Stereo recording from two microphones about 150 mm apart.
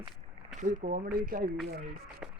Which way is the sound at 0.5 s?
55° right (ahead or behind).